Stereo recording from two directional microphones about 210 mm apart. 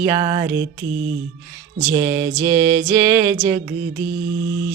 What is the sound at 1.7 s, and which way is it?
Music, 15° right (ahead or behind).